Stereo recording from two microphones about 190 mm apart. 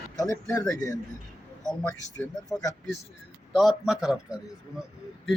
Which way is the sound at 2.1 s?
15° left (ahead or behind).